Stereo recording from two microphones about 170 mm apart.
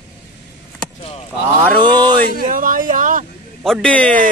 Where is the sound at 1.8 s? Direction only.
25° right (ahead or behind).